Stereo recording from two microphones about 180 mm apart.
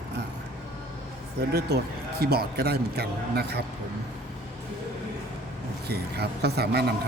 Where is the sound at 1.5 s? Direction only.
60° right (ahead or behind).